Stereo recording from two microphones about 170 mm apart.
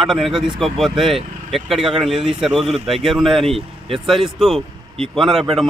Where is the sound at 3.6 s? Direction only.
35° right (ahead or behind).